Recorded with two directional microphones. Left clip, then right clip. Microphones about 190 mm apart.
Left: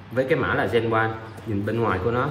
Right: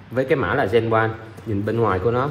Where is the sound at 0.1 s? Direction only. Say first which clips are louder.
Right 2 dB; 20° right (ahead or behind).